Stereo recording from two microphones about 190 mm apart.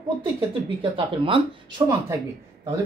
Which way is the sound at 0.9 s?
30° right (ahead or behind).